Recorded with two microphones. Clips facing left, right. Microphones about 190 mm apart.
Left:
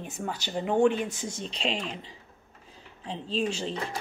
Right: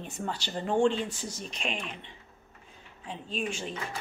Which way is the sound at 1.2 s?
25° left (ahead or behind).